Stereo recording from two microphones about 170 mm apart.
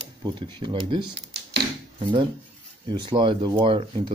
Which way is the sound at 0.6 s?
30° right (ahead or behind).